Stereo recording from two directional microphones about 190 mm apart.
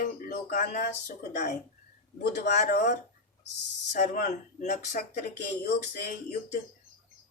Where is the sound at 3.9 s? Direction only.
40° left (ahead or behind).